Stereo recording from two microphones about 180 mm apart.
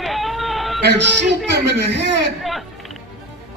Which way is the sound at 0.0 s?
Centre (ahead or behind).